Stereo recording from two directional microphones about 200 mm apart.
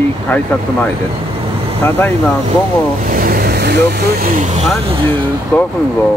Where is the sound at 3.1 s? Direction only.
45° right (ahead or behind).